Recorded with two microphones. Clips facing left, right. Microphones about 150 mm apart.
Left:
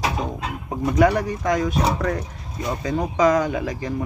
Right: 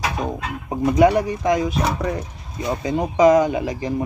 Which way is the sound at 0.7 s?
15° right (ahead or behind).